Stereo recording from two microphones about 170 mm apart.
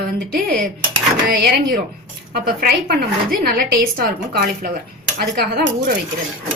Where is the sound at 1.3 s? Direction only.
70° right (ahead or behind).